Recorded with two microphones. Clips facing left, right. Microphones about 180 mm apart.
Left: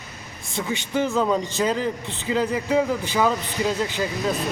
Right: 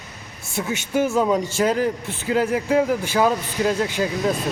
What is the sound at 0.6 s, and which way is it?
Speech, 10° right (ahead or behind).